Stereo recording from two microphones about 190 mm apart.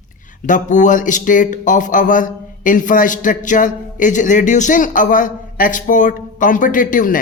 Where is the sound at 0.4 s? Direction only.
40° left (ahead or behind).